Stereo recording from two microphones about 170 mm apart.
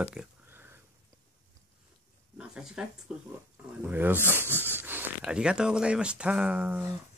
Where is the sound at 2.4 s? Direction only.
5° right (ahead or behind).